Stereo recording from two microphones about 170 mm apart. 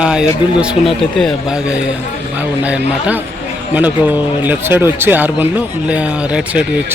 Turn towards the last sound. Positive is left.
turn(degrees=-5)  # may be behind; listen again after turning